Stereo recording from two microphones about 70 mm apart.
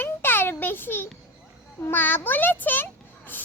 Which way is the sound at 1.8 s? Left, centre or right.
Left.